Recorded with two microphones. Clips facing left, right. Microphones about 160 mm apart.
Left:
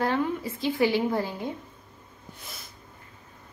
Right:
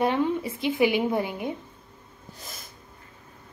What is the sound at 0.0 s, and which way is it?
A woman's voice, 20° right (ahead or behind).